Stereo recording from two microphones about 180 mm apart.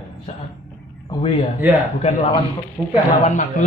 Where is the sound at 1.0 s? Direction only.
25° left (ahead or behind).